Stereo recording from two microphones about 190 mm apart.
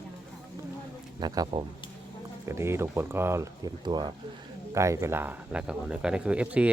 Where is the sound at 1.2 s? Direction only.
20° right (ahead or behind).